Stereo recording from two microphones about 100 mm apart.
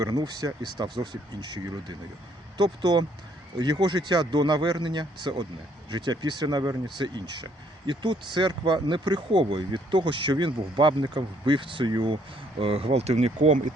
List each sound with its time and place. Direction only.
0.0 s speech: 40° right (ahead or behind); by 13.5 s 90° right